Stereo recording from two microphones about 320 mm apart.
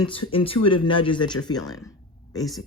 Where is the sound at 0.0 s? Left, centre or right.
Centre.